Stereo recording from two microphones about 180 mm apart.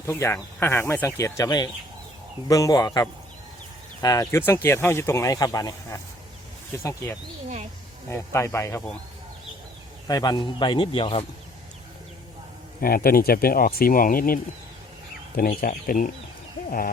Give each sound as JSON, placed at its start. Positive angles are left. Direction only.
{"t": 0.0, "sound": "a man's voice", "side_deg": 15}
{"t": 10.1, "sound": "a man's voice", "side_deg": 20}
{"t": 12.8, "sound": "speech", "side_deg": 55}
{"t": 15.4, "sound": "speech", "side_deg": 50}